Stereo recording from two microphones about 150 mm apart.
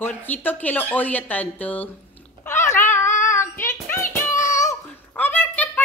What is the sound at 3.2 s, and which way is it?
Child singing, 20° left (ahead or behind).